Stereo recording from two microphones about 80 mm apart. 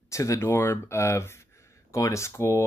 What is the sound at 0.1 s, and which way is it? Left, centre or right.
Speech, left.